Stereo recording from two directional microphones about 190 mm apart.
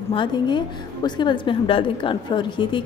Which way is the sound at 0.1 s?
25° left (ahead or behind).